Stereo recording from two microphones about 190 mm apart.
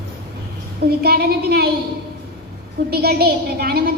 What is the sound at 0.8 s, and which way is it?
Speech, 55° right (ahead or behind).